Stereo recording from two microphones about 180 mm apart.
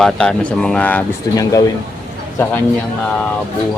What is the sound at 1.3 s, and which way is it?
Speech, 20° left (ahead or behind).